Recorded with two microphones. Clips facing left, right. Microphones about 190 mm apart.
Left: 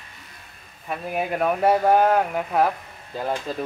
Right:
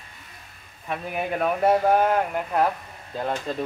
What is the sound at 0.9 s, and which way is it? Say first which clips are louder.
Speech: left 2 dB; centre (ahead or behind).